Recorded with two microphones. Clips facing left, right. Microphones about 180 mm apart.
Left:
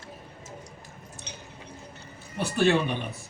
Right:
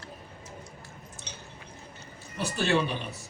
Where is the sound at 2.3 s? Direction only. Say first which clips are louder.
Left 5 dB; 55° left (ahead or behind).